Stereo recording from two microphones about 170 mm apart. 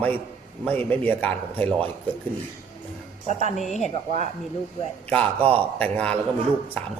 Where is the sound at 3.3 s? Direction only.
40° left (ahead or behind).